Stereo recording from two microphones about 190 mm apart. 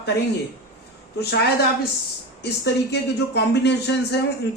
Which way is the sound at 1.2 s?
60° left (ahead or behind).